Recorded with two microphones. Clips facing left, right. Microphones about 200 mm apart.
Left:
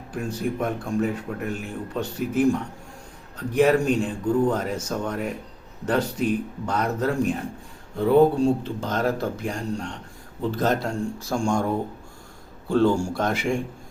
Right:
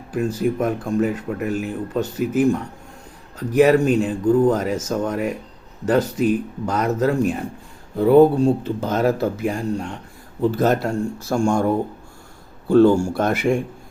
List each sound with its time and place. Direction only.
0.1 s speech: 5° right (ahead or behind)
12.7 s speech: 5° right (ahead or behind)